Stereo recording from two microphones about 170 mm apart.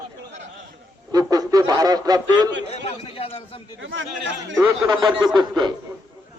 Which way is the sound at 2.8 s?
35° left (ahead or behind).